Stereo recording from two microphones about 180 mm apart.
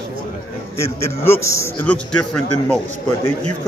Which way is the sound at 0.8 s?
15° left (ahead or behind).